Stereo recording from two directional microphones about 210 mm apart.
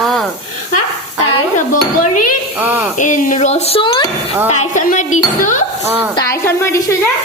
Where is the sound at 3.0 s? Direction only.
35° left (ahead or behind).